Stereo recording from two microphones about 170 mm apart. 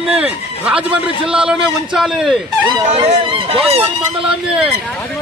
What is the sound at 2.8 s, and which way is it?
Speech, 40° right (ahead or behind).